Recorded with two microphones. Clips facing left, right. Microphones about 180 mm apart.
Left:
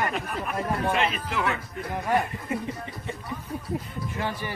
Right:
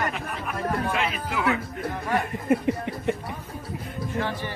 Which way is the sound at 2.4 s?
60° right (ahead or behind).